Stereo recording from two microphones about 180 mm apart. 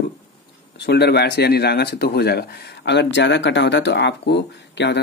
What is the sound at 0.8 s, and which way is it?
Speech, 65° left (ahead or behind).